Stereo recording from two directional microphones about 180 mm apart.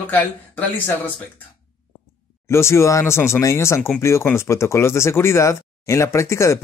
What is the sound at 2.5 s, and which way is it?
Speech, 15° left (ahead or behind).